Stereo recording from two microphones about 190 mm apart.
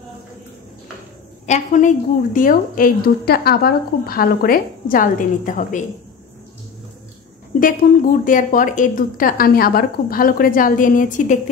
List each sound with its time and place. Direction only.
1.4 s a woman's voice: 40° left (ahead or behind)
7.6 s a woman's voice: 45° left (ahead or behind)